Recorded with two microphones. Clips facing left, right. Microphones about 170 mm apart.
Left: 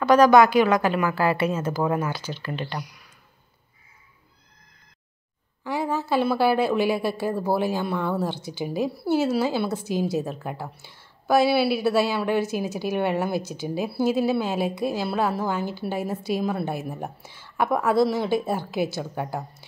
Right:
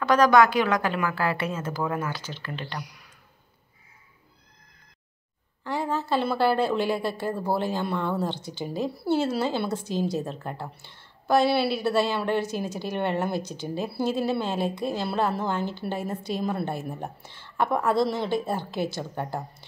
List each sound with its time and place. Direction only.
0.0 s a woman's voice: 10° left (ahead or behind)
5.6 s a woman's voice: 10° left (ahead or behind)